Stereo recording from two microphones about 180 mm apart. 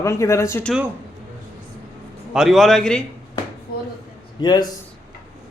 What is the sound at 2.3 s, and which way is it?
Speech, centre (ahead or behind).